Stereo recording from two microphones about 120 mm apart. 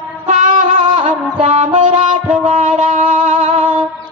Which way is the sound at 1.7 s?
45° right (ahead or behind).